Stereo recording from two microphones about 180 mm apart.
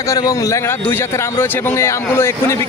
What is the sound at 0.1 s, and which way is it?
A man's voice, 20° left (ahead or behind).